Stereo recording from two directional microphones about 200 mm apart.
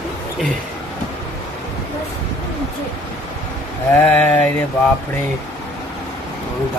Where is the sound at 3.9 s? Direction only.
10° left (ahead or behind).